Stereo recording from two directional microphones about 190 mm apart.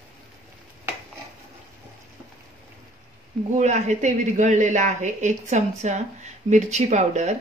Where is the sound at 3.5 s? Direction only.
40° right (ahead or behind).